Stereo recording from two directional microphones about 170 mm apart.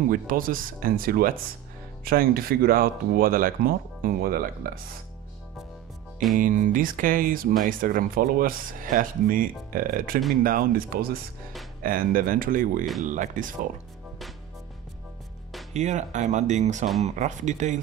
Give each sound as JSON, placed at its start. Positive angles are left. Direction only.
{"t": 0.1, "sound": "speech", "side_deg": -55}
{"t": 6.3, "sound": "speech", "side_deg": -50}
{"t": 15.7, "sound": "speech", "side_deg": -40}